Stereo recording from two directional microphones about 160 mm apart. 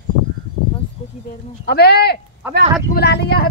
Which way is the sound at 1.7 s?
85° left.